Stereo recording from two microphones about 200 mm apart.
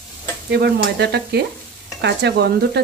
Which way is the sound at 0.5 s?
55° right (ahead or behind).